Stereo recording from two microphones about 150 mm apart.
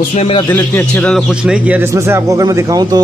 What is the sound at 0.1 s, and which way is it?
Speech, 45° left (ahead or behind).